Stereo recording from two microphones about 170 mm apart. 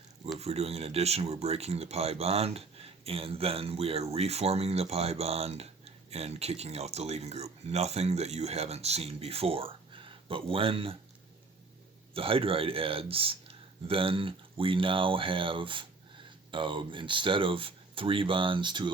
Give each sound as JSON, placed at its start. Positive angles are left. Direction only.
{"t": 0.3, "sound": "speech", "side_deg": -40}
{"t": 12.1, "sound": "speech", "side_deg": -30}